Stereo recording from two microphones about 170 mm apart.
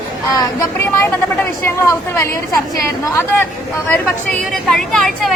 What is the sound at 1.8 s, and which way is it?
Speech, 20° left (ahead or behind).